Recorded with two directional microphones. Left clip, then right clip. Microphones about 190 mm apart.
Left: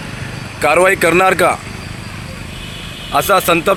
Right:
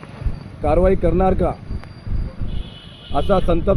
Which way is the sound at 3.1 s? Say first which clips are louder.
Left 6 dB; 40° left (ahead or behind).